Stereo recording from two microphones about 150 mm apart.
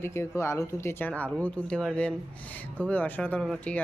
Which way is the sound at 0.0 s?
20° left (ahead or behind).